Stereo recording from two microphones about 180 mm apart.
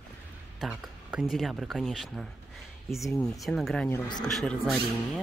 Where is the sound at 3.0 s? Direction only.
20° left (ahead or behind).